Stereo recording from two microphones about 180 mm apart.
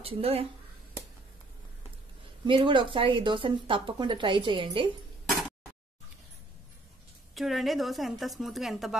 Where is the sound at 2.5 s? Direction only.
30° right (ahead or behind).